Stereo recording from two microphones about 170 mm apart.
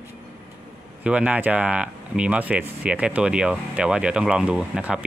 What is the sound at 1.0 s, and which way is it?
Speech, 5° right (ahead or behind).